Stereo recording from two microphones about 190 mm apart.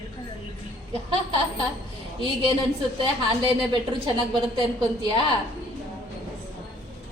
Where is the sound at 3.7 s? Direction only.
25° right (ahead or behind).